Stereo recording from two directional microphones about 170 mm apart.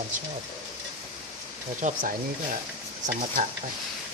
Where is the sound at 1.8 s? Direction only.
50° right (ahead or behind).